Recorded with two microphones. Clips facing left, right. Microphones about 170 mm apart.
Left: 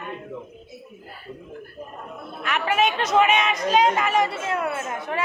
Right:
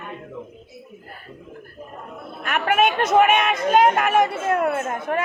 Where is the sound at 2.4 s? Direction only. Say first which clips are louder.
Right 3 dB; 55° right (ahead or behind).